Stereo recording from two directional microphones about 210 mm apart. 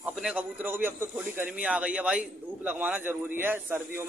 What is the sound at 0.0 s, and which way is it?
Speech, 5° right (ahead or behind).